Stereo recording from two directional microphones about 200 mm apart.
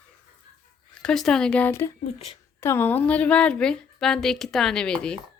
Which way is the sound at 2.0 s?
35° left (ahead or behind).